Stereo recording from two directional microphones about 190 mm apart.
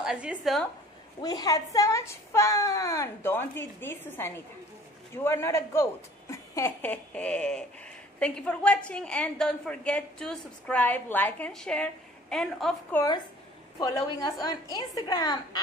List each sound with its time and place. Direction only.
0.0 s a woman's voice: 5° right (ahead or behind)
1.2 s a woman's voice: 20° left (ahead or behind); by 12.7 s centre (ahead or behind)
12.9 s a woman's voice: 20° left (ahead or behind)